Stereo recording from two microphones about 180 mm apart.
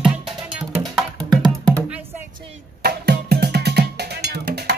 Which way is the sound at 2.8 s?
60° right (ahead or behind).